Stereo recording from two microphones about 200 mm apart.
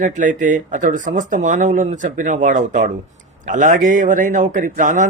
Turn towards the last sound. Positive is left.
turn(degrees=-40)  # may be behind; listen again after turning